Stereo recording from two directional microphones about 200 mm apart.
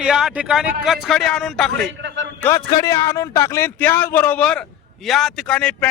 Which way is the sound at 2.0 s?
60° right (ahead or behind).